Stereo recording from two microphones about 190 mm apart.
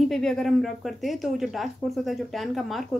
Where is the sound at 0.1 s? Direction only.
Centre (ahead or behind).